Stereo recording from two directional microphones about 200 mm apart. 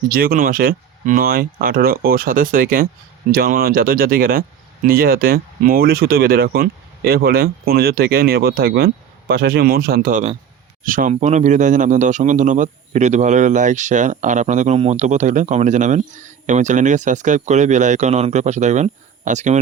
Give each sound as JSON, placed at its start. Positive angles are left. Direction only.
{"t": 0.1, "sound": "a man's voice", "side_deg": -50}